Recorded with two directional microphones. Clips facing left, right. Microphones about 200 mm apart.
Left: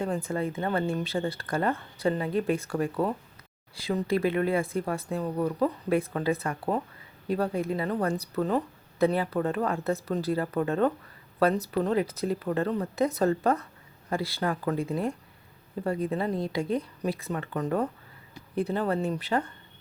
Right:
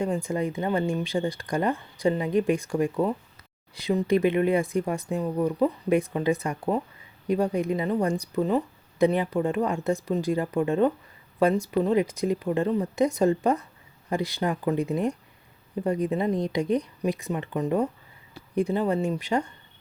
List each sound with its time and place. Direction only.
0.0 s speech: 10° right (ahead or behind)